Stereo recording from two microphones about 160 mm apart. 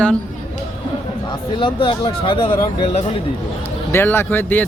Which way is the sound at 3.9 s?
15° left (ahead or behind).